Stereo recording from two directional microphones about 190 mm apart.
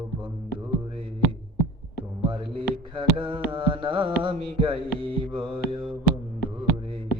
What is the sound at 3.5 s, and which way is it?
Carnatic music, 25° right (ahead or behind).